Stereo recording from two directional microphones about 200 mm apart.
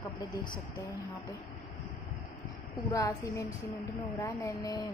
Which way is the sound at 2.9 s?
15° left (ahead or behind).